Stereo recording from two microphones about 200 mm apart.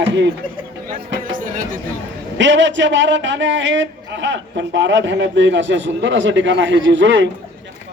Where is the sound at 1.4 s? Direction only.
45° right (ahead or behind).